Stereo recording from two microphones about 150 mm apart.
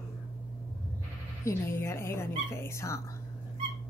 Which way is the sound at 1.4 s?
15° left (ahead or behind).